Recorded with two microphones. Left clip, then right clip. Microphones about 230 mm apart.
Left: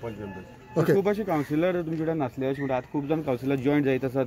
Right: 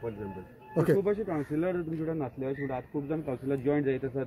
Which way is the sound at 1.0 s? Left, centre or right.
Left.